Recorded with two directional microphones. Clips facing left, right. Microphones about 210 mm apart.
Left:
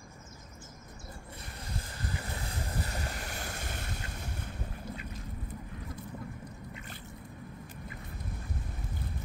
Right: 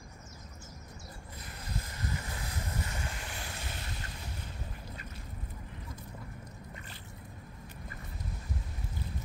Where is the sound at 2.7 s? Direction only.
35° left (ahead or behind).